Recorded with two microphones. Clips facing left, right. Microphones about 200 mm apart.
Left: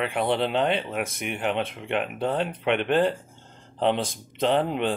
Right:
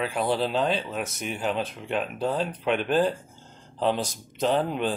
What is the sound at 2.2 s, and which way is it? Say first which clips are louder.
Speech: left 1 dB; 65° left (ahead or behind).